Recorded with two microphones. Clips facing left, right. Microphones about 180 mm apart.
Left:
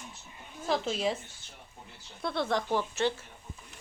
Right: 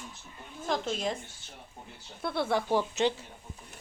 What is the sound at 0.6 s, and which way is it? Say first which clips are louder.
Speech: left 2 dB; 5° left (ahead or behind).